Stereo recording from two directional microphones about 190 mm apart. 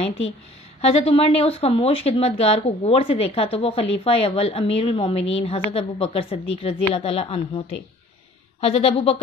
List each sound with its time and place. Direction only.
0.7 s speech: 30° left (ahead or behind)